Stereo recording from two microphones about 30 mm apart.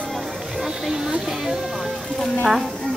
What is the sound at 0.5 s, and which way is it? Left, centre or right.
Speech, centre.